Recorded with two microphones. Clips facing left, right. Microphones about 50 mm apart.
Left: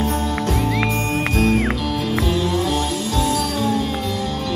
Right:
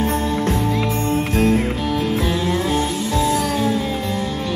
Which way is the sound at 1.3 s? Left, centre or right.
Right.